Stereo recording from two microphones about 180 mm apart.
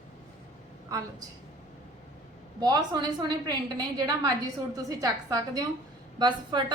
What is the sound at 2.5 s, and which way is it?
A woman's voice, 25° right (ahead or behind).